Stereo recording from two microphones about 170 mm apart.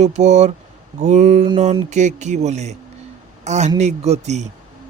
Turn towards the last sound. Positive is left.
turn(degrees=-40)  # may be behind; listen again after turning